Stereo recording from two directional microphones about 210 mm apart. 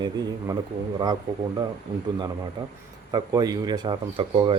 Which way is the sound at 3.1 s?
20° right (ahead or behind).